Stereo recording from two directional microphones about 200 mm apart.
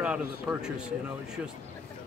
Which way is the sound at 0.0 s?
5° right (ahead or behind).